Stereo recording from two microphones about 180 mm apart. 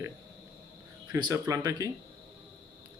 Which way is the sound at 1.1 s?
20° right (ahead or behind).